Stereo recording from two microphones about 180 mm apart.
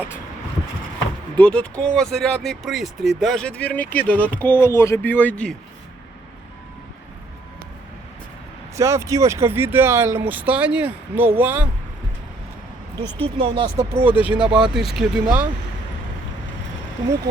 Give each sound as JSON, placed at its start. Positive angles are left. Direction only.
{"t": 1.4, "sound": "a man's voice", "side_deg": 5}
{"t": 8.7, "sound": "speech", "side_deg": -15}
{"t": 13.2, "sound": "speech", "side_deg": -30}
{"t": 14.0, "sound": "speech", "side_deg": -10}